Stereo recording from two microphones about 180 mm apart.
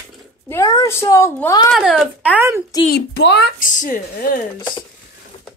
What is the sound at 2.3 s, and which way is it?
Speech, 15° right (ahead or behind).